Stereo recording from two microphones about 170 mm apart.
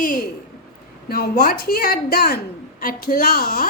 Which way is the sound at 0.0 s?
55° left (ahead or behind).